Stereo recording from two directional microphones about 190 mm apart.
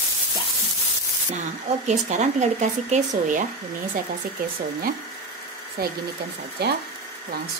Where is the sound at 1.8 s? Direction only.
40° right (ahead or behind).